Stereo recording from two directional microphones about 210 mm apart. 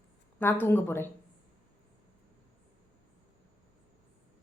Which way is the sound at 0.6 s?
10° left (ahead or behind).